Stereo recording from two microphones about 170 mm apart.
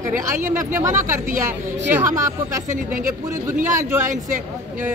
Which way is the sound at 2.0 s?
20° right (ahead or behind).